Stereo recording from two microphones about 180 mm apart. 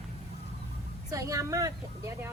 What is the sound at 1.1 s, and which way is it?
Vehicle, 20° right (ahead or behind).